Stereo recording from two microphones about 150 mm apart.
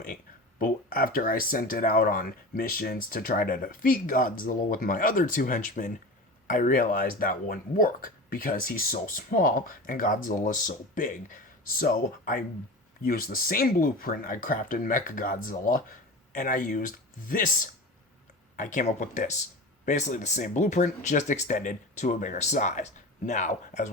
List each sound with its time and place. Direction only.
0.6 s speech: 75° left (ahead or behind)
18.5 s speech: 60° left (ahead or behind)